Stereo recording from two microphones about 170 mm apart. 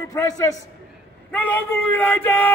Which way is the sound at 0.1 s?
20° left (ahead or behind).